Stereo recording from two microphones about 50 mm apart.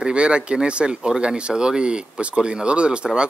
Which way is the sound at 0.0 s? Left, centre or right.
Right.